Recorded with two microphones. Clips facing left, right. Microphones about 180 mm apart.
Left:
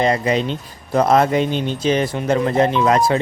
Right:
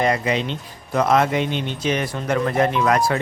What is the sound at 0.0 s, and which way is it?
Speech, 35° left (ahead or behind).